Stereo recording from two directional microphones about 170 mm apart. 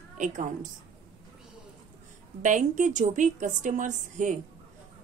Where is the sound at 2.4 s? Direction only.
45° right (ahead or behind).